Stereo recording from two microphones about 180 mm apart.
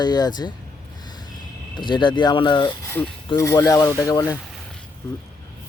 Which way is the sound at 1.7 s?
25° left (ahead or behind).